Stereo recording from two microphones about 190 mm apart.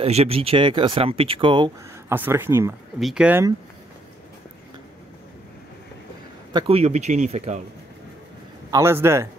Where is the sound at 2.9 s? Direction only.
Centre (ahead or behind).